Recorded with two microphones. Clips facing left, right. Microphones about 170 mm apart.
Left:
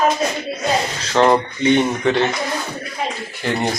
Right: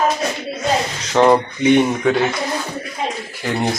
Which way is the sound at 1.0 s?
15° right (ahead or behind).